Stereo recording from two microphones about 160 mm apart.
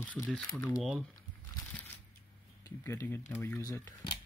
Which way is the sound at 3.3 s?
15° left (ahead or behind).